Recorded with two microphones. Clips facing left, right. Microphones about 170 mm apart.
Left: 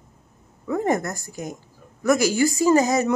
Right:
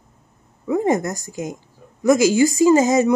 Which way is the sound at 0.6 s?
15° right (ahead or behind).